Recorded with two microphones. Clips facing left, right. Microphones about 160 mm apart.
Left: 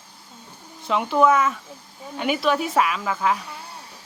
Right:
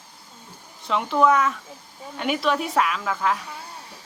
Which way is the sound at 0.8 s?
Centre (ahead or behind).